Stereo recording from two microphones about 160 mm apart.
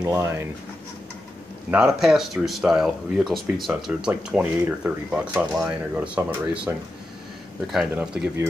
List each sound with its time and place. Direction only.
0.0 s speech: 15° right (ahead or behind)
1.7 s speech: 5° right (ahead or behind)